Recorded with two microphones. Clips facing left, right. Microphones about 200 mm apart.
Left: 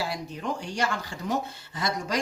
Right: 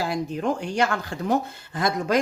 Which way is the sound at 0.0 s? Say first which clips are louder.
Right 6 dB; 50° right (ahead or behind).